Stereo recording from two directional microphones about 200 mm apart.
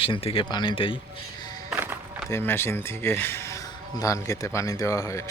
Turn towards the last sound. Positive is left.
turn(degrees=15)  # may be behind; listen again after turning